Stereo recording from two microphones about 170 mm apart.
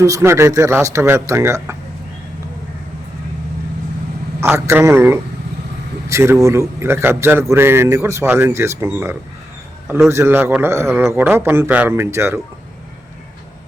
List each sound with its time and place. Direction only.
0.0 s a man's voice: 15° right (ahead or behind)
4.4 s a man's voice: 15° right (ahead or behind)